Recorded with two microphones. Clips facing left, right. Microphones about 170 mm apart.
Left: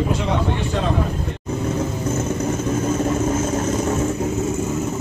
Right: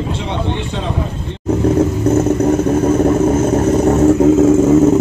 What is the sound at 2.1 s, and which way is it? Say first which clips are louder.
Vehicle: right 10 dB; 65° right (ahead or behind).